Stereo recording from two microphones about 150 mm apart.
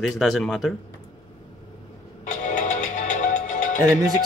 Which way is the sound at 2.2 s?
55° left (ahead or behind).